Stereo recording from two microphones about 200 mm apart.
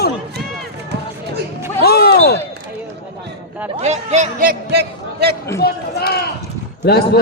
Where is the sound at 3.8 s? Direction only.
35° right (ahead or behind); by 5.4 s 55° right (ahead or behind).